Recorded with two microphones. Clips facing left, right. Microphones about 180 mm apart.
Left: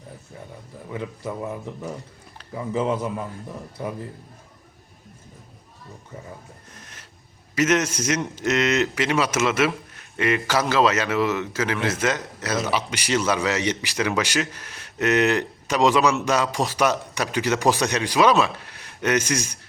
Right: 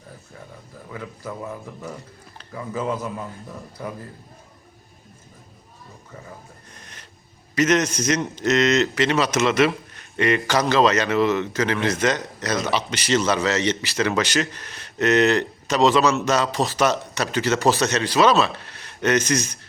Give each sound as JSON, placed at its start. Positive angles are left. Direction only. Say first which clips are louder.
{"t": 0.9, "sound": "a man's voice", "louder": "left 3 dB", "side_deg": 20}
{"t": 6.7, "sound": "a sound", "louder": "even", "side_deg": 5}
{"t": 7.5, "sound": "a man's voice", "louder": "right 1 dB", "side_deg": 5}